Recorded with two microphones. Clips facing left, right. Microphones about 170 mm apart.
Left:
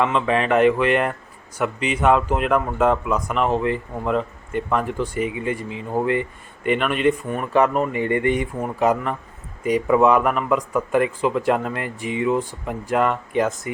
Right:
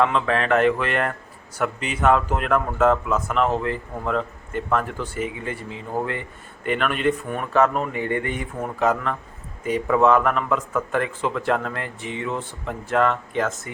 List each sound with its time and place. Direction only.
0.0 s speech: centre (ahead or behind)
8.8 s speech: 15° left (ahead or behind)